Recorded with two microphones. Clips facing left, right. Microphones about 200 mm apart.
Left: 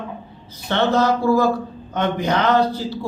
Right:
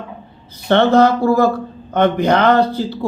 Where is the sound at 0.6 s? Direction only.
60° right (ahead or behind).